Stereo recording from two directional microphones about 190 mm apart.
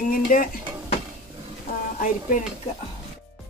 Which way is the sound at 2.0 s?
45° left (ahead or behind).